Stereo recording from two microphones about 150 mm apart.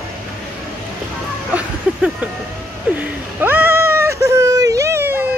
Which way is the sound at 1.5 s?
10° right (ahead or behind).